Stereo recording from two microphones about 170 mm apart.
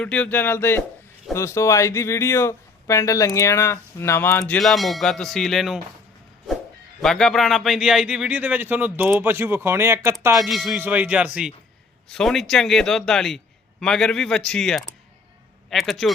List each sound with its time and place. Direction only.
0.0 s speech: 5° left (ahead or behind)
7.0 s a man's voice: 5° left (ahead or behind); by 10.3 s 15° right (ahead or behind)
10.3 s a man's voice: centre (ahead or behind)